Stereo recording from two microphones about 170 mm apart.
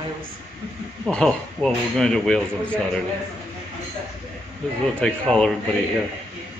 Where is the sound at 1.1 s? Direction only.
5° left (ahead or behind).